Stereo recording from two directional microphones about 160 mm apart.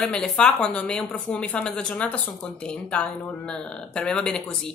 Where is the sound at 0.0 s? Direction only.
5° left (ahead or behind).